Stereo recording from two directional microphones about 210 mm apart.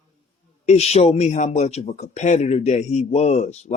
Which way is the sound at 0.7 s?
30° left (ahead or behind).